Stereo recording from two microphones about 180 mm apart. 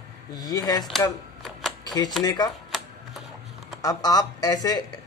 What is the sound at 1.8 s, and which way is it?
Typewriter, 20° left (ahead or behind).